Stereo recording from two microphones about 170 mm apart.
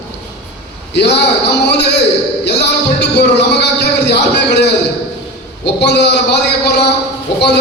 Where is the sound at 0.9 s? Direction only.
80° left.